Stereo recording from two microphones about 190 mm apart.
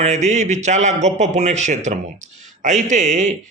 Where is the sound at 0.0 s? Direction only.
40° right (ahead or behind).